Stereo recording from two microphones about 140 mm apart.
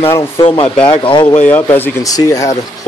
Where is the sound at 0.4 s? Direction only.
35° left (ahead or behind).